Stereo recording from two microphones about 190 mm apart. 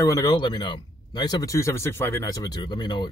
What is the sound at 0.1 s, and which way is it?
Speech, 20° left (ahead or behind).